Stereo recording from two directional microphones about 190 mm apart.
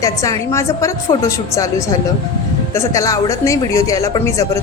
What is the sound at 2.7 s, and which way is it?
Speech, 15° left (ahead or behind).